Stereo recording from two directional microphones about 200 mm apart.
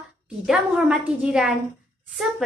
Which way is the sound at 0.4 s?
Centre (ahead or behind).